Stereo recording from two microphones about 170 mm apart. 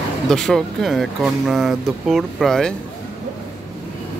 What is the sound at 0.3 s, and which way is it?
Speech, centre (ahead or behind).